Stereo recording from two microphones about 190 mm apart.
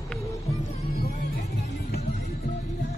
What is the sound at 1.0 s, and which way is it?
Music, 55° left (ahead or behind).